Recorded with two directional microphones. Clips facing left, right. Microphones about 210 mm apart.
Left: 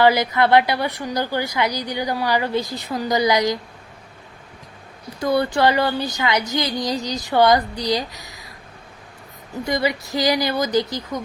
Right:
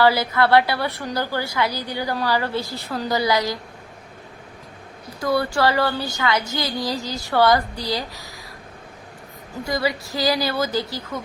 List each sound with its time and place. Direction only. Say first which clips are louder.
0.0 s a woman's voice: left 2 dB; 20° left (ahead or behind)
5.2 s speech: left 2 dB; 20° left (ahead or behind)
9.6 s speech: left 2 dB; 20° left (ahead or behind)